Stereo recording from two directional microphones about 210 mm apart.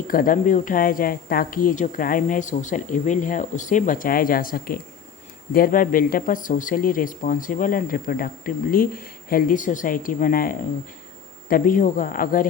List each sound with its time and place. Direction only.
0.1 s speech: 40° left (ahead or behind)